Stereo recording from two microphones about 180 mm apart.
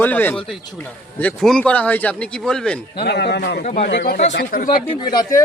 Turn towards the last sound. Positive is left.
turn(degrees=25)  # may be behind; listen again after turning